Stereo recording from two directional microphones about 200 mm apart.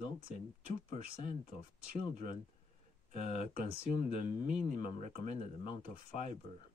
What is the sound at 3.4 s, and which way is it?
Speech, 40° right (ahead or behind).